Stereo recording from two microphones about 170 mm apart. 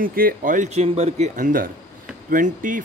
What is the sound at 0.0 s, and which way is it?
Speech, 60° right (ahead or behind).